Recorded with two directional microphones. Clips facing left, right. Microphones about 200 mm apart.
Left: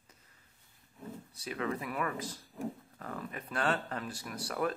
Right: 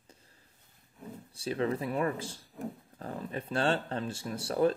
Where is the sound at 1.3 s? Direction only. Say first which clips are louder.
Right 5 dB; 30° right (ahead or behind).